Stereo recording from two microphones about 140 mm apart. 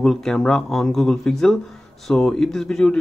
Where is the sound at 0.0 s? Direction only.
Centre (ahead or behind).